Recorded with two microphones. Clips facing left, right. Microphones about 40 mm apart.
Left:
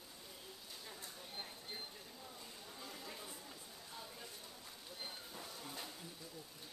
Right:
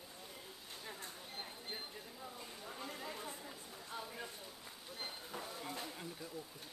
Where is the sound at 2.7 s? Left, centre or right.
Right.